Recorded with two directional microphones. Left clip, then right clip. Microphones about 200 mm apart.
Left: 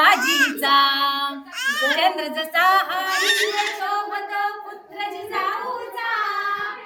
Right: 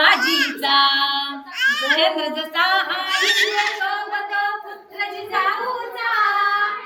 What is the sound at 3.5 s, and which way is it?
Speech, 20° left (ahead or behind).